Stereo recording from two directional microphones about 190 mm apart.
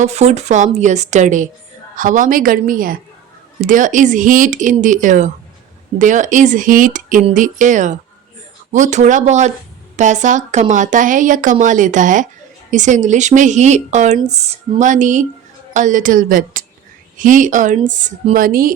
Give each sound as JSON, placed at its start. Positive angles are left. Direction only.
{"t": 0.0, "sound": "speech", "side_deg": -35}